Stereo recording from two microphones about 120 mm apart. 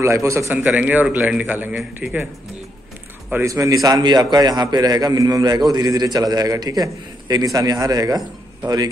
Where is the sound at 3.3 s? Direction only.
25° right (ahead or behind).